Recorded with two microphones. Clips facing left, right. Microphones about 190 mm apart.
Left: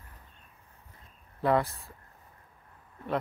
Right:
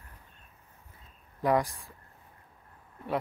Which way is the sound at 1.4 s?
15° right (ahead or behind).